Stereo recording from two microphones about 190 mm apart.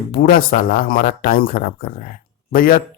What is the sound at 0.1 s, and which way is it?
Speech, 50° left (ahead or behind).